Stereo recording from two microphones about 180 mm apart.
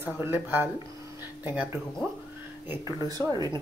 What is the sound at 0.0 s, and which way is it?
Speech, 10° right (ahead or behind).